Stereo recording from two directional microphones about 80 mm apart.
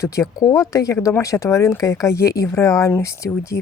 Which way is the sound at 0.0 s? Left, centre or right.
Left.